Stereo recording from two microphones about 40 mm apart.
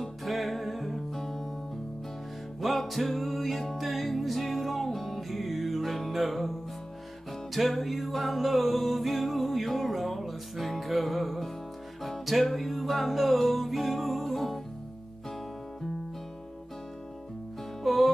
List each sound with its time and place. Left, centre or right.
0.0 s music: centre
2.6 s music: centre
7.5 s music: centre
17.8 s music: centre